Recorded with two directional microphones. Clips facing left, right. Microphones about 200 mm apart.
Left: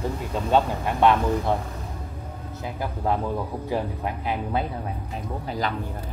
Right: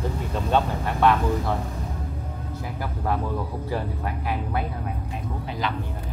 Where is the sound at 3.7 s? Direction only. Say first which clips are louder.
Left 3 dB; 20° left (ahead or behind).